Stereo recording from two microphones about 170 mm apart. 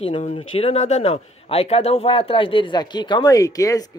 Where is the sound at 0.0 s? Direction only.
35° left (ahead or behind).